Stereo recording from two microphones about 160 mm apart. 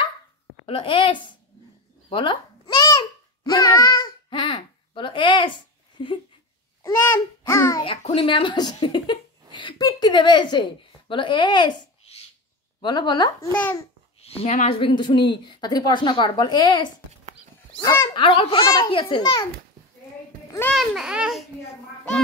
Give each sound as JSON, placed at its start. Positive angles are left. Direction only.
{"t": 0.7, "sound": "a child's voice", "side_deg": 35}
{"t": 2.0, "sound": "babbling", "side_deg": 30}
{"t": 6.8, "sound": "babbling", "side_deg": 15}
{"t": 8.0, "sound": "speech", "side_deg": 35}
{"t": 12.8, "sound": "a woman's voice", "side_deg": 25}
{"t": 13.5, "sound": "a child's voice", "side_deg": 10}
{"t": 14.2, "sound": "a child's voice", "side_deg": 40}
{"t": 14.7, "sound": "a child's voice", "side_deg": 35}
{"t": 20.7, "sound": "a child's voice", "side_deg": 0}